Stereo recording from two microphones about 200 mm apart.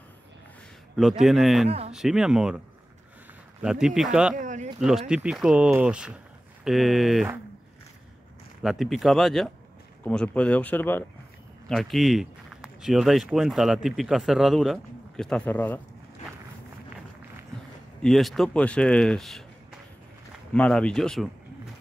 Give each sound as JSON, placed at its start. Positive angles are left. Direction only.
{"t": 1.2, "sound": "speech", "side_deg": 0}
{"t": 3.6, "sound": "speech", "side_deg": 0}
{"t": 4.4, "sound": "a sound", "side_deg": -40}
{"t": 4.7, "sound": "speech", "side_deg": 0}
{"t": 8.6, "sound": "speech", "side_deg": 0}
{"t": 18.0, "sound": "speech", "side_deg": 0}
{"t": 20.5, "sound": "speech", "side_deg": 5}